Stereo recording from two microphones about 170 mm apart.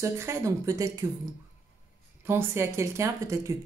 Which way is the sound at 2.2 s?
15° right (ahead or behind).